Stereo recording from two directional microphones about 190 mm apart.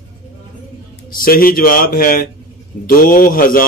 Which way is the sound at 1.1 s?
50° left (ahead or behind).